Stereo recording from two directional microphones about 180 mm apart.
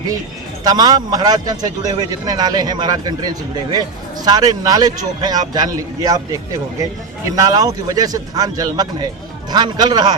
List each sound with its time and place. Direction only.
0.6 s a man's voice: 20° right (ahead or behind)